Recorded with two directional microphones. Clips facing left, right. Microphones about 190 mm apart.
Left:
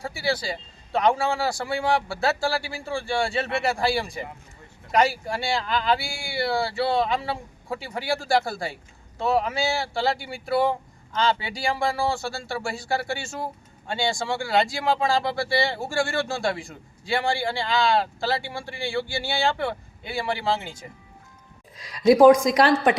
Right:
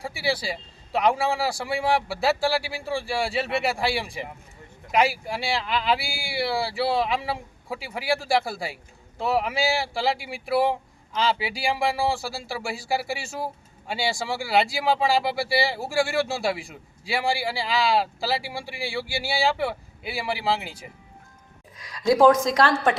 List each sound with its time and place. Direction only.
0.0 s speech: centre (ahead or behind)
21.8 s a woman's voice: 25° left (ahead or behind)